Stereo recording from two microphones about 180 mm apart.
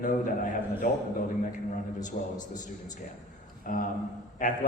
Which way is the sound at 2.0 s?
45° left (ahead or behind).